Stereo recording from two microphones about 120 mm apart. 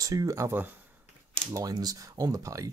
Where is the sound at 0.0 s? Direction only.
30° right (ahead or behind).